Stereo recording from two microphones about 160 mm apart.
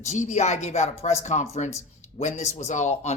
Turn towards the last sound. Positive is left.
turn(degrees=45)  # may be behind; listen again after turning